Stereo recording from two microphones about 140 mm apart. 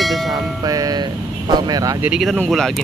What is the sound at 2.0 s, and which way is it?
Speech, 5° right (ahead or behind).